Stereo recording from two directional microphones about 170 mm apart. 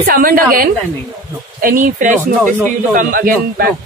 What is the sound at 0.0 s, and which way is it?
A woman's voice, 55° right (ahead or behind).